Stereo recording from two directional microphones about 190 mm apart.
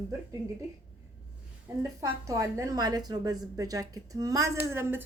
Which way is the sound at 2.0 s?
15° right (ahead or behind).